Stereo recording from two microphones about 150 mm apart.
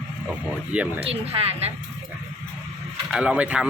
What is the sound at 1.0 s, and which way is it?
Speech, 40° right (ahead or behind).